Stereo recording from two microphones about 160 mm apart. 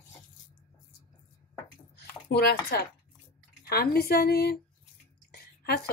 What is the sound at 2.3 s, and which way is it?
A woman's voice, 80° left.